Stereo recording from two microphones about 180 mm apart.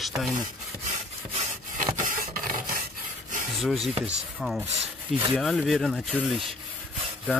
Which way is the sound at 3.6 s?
Centre (ahead or behind).